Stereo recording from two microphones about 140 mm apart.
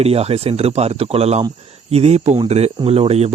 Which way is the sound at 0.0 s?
45° right (ahead or behind).